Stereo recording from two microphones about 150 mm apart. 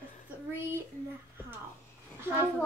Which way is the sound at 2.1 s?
15° right (ahead or behind).